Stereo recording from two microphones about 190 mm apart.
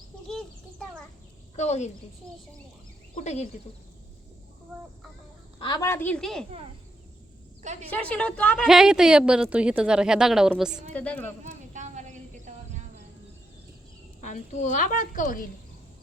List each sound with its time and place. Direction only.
0.3 s a sound: centre (ahead or behind)
1.5 s a woman's voice: 35° left (ahead or behind)
3.2 s a woman's voice: 35° left (ahead or behind)
5.5 s a woman's voice: 25° left (ahead or behind); by 6.4 s 5° left (ahead or behind)
7.9 s a woman's voice: 5° left (ahead or behind)
10.9 s a woman's voice: 5° left (ahead or behind)
11.4 s a sound: 40° right (ahead or behind)
14.2 s a woman's voice: 40° left (ahead or behind)